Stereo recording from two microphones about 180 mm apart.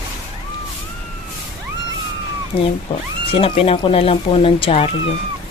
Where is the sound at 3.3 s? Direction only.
30° left (ahead or behind).